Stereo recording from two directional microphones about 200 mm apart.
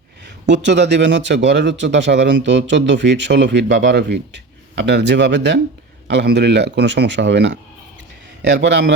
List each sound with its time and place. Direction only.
0.4 s speech: 60° right (ahead or behind)